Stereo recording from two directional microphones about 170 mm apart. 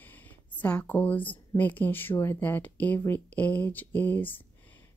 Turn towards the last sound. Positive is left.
turn(degrees=10)  # may be behind; listen again after turning